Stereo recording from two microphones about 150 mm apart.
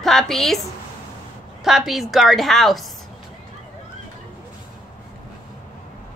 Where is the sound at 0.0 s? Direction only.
Centre (ahead or behind).